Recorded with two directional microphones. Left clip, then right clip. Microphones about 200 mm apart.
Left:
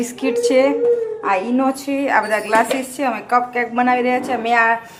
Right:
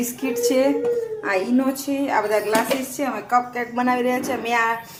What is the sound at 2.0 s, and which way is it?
A woman's voice, 30° left (ahead or behind).